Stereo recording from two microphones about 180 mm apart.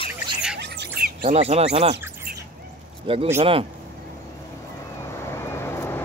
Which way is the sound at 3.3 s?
30° right (ahead or behind).